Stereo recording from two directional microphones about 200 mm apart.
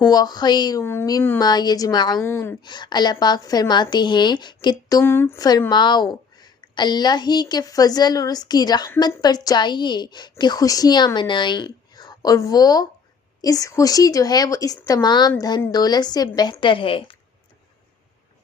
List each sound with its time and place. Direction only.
0.0 s a woman's voice: 20° left (ahead or behind)